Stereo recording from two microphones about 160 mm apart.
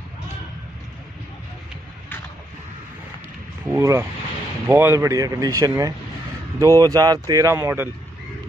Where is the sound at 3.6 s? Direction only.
15° right (ahead or behind).